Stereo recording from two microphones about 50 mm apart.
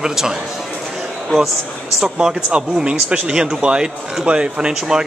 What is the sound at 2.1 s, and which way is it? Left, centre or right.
Speech, centre.